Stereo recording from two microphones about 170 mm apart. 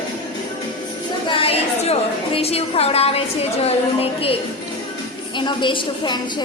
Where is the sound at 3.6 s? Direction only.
35° left (ahead or behind).